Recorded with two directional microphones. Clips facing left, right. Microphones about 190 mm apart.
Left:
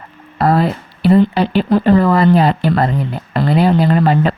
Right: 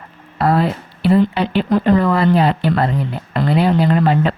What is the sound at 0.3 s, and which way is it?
Speech, 40° left (ahead or behind).